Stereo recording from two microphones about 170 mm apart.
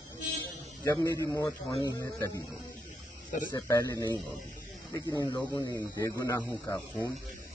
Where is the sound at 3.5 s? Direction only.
20° left (ahead or behind).